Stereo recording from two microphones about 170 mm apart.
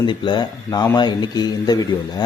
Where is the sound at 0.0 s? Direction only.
25° left (ahead or behind).